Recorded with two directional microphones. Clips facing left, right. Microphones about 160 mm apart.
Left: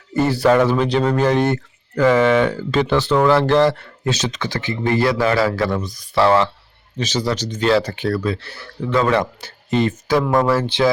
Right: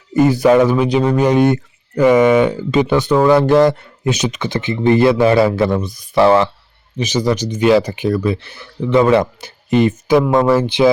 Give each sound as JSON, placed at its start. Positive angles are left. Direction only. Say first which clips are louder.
{"t": 0.1, "sound": "speech", "louder": "right 4 dB", "side_deg": -15}